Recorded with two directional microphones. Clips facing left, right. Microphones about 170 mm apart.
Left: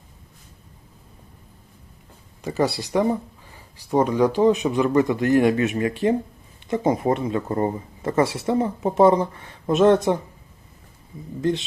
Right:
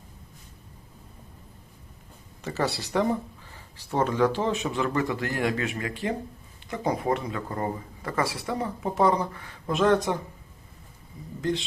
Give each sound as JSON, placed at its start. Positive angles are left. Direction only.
{"t": 2.4, "sound": "speech", "side_deg": 15}
{"t": 11.3, "sound": "speech", "side_deg": 20}